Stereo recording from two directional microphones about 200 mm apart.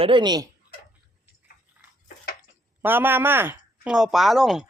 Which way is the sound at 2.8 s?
10° right (ahead or behind).